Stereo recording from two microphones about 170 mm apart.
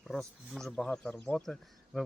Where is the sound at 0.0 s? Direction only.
Centre (ahead or behind).